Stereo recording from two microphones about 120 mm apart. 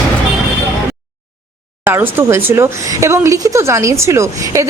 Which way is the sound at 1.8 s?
20° right (ahead or behind).